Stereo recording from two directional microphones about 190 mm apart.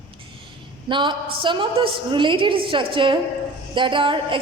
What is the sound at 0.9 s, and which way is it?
A woman's voice, 25° right (ahead or behind).